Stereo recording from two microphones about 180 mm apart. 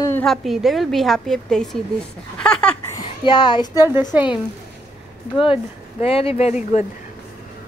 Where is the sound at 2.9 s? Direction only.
25° left (ahead or behind).